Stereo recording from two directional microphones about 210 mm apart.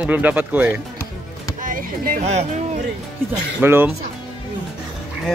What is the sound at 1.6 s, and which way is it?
Speech, 40° right (ahead or behind).